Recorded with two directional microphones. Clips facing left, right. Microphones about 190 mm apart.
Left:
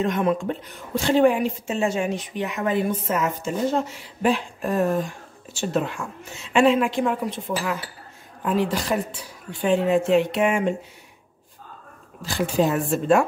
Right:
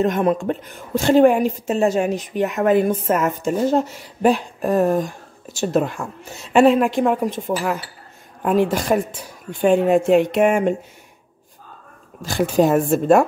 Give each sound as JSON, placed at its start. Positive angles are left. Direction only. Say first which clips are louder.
{"t": 0.0, "sound": "a woman's voice", "louder": "right 4 dB", "side_deg": -40}
{"t": 12.2, "sound": "a woman's voice", "louder": "right 5 dB", "side_deg": -50}